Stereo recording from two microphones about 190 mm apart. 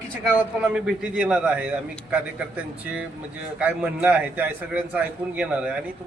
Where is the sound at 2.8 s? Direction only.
5° right (ahead or behind).